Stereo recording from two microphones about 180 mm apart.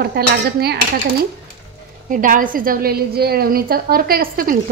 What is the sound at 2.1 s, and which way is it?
A woman's voice, 50° right (ahead or behind).